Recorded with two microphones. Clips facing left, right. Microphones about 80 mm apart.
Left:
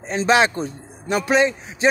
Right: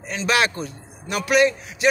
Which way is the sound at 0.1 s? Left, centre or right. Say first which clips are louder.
Left 4 dB; left.